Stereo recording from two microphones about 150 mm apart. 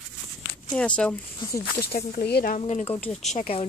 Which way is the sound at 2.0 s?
65° left (ahead or behind).